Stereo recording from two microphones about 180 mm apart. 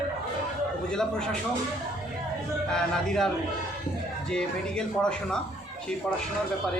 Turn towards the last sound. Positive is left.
turn(degrees=5)  # may be behind; listen again after turning